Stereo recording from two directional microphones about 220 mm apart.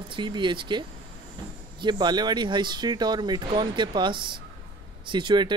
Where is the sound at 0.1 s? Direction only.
20° right (ahead or behind).